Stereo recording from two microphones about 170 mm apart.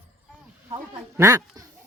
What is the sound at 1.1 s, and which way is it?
Speech, 20° right (ahead or behind).